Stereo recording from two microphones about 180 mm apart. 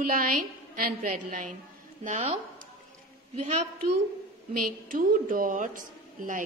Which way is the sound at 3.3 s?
40° right (ahead or behind).